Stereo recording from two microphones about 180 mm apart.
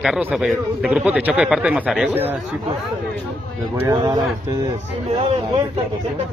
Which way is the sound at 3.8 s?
20° right (ahead or behind).